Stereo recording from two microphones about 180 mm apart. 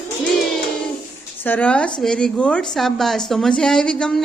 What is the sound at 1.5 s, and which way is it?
A woman's voice, 5° left (ahead or behind).